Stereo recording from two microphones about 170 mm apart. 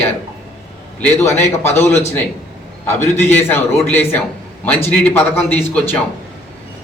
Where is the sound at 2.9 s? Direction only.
10° left (ahead or behind).